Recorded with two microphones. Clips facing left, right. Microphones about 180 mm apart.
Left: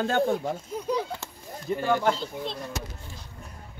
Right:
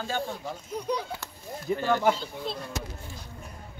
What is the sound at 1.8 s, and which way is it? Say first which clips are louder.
Speech: left 2 dB; 5° left (ahead or behind).